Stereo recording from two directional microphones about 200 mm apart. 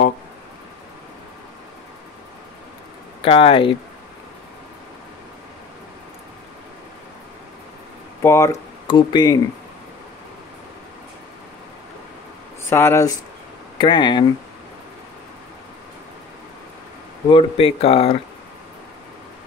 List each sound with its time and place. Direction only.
3.2 s speech: 25° left (ahead or behind)
8.2 s speech: 15° left (ahead or behind)
12.6 s speech: 10° left (ahead or behind)
17.3 s speech: 25° left (ahead or behind)